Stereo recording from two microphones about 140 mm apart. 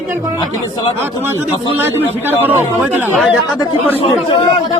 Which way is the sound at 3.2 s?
Centre (ahead or behind).